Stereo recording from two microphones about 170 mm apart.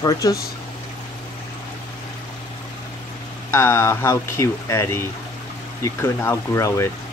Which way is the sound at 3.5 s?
15° left (ahead or behind).